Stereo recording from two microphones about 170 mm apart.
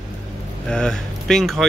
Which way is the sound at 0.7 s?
5° left (ahead or behind).